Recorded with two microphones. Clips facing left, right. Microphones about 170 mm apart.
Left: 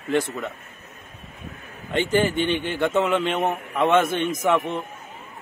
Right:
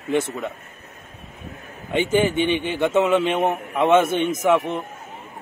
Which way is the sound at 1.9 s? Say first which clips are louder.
Right 2 dB; 10° right (ahead or behind).